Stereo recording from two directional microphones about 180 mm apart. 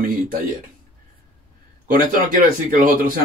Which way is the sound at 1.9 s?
50° right (ahead or behind).